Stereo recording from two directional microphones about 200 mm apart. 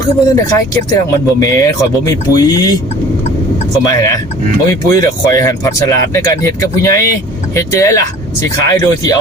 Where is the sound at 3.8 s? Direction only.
15° left (ahead or behind).